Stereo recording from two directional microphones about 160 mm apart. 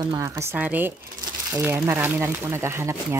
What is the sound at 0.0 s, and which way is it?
Speech, 20° right (ahead or behind).